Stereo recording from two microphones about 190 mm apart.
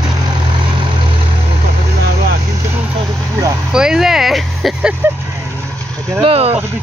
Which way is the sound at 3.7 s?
5° right (ahead or behind).